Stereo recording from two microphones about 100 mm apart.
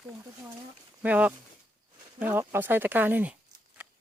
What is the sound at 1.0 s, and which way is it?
Speech, 15° right (ahead or behind).